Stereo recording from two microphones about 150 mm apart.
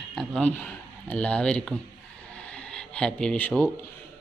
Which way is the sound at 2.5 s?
5° left (ahead or behind).